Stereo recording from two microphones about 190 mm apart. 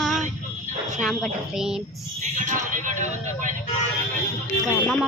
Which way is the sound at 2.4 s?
40° right (ahead or behind).